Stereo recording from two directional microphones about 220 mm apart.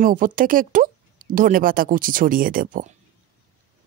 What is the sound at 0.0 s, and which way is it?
Speech, 40° right (ahead or behind).